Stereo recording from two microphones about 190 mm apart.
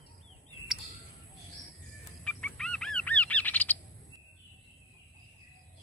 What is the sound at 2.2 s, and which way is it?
Bird, 5° left (ahead or behind).